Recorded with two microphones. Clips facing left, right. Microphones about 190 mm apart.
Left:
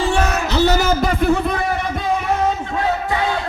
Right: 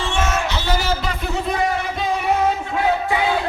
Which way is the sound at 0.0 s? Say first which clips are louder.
Left 3 dB; 35° left (ahead or behind).